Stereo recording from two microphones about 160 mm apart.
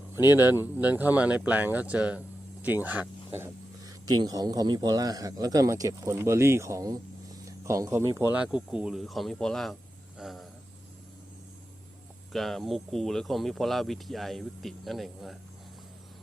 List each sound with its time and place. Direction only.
0.3 s speech: 15° right (ahead or behind); by 9.7 s centre (ahead or behind)
10.2 s a sound: centre (ahead or behind)
12.3 s speech: centre (ahead or behind)